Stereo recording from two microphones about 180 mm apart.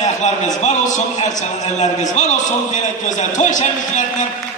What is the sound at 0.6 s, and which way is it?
A man's voice, 40° left (ahead or behind).